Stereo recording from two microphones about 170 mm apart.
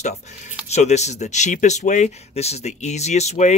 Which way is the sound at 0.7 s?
40° left (ahead or behind).